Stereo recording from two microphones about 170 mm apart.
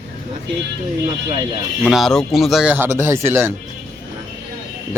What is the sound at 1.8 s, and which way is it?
A man's voice, centre (ahead or behind).